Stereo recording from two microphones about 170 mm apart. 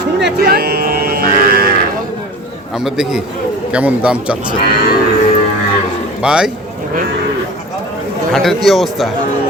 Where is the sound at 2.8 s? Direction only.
5° right (ahead or behind).